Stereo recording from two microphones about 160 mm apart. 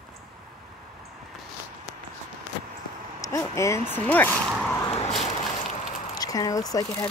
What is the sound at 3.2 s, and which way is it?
Speech, 20° left (ahead or behind).